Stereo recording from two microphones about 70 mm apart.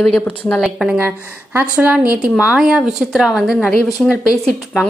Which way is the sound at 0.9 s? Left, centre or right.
Right.